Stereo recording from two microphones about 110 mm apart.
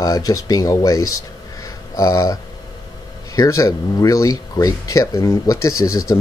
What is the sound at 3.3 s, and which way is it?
Speech, 30° left (ahead or behind).